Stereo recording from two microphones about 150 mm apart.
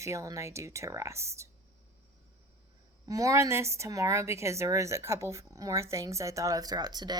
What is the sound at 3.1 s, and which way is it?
A woman's voice, 20° right (ahead or behind).